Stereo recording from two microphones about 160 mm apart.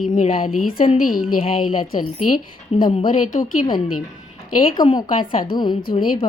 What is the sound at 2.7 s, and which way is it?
Speech, 40° left (ahead or behind).